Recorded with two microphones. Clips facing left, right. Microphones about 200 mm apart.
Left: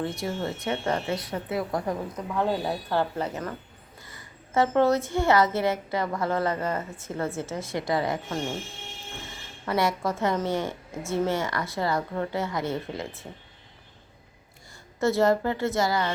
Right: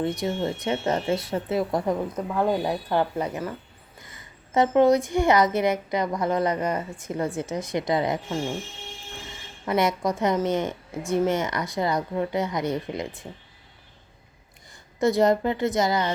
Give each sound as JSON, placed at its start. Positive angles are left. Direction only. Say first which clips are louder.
{"t": 0.0, "sound": "speech", "louder": "right 4 dB", "side_deg": -20}
{"t": 2.3, "sound": "a woman's voice", "louder": "right 2 dB", "side_deg": -15}
{"t": 9.6, "sound": "a woman's voice", "louder": "right 2 dB", "side_deg": -15}
{"t": 14.9, "sound": "a woman's voice", "louder": "right 2 dB", "side_deg": -15}